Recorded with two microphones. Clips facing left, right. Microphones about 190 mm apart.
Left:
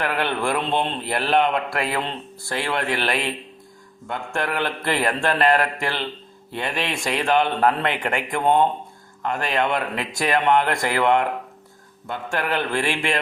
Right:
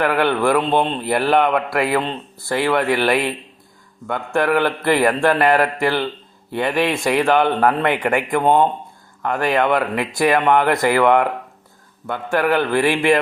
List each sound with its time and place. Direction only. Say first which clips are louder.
0.0 s speech: right 6 dB; 55° right (ahead or behind)